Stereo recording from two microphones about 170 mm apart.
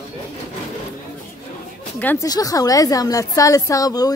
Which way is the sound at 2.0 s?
10° left (ahead or behind).